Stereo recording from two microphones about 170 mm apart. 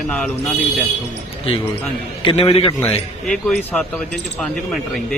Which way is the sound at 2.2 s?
30° left (ahead or behind).